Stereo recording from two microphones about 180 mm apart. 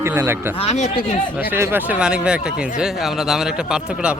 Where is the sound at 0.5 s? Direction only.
35° left (ahead or behind).